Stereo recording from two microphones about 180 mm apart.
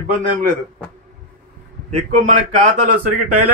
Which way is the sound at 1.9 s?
40° right (ahead or behind).